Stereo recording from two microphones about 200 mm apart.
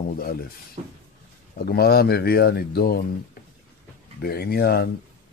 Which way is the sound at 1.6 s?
50° left (ahead or behind).